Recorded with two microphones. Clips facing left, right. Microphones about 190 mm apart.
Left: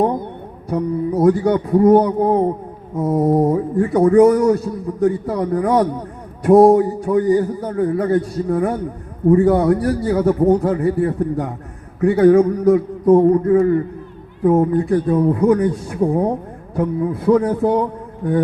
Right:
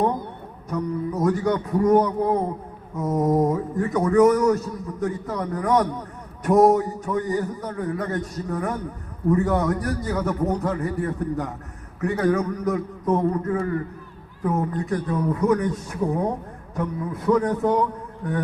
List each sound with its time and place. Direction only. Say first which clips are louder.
0.7 s a man's voice: left 6 dB; 35° left (ahead or behind)